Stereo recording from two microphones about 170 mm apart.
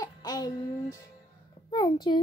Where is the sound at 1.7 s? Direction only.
25° left (ahead or behind).